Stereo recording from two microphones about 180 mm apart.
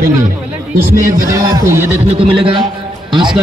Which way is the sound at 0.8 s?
15° right (ahead or behind).